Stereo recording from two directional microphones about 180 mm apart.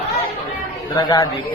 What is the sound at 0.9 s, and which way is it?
Speech, 20° left (ahead or behind).